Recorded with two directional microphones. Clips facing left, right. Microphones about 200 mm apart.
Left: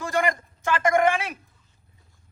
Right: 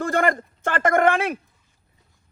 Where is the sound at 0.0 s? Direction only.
55° right (ahead or behind).